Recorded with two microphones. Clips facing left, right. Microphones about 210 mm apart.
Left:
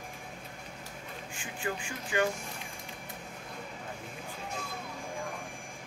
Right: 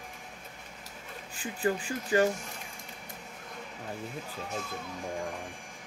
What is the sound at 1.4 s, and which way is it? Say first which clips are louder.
Speech: right 7 dB; 35° right (ahead or behind).